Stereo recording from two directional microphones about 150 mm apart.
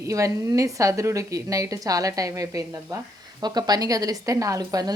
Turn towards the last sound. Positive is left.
turn(degrees=-25)  # may be behind; listen again after turning